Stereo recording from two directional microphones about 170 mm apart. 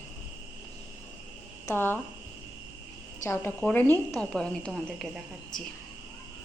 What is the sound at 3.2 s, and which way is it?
A woman's voice, 15° left (ahead or behind).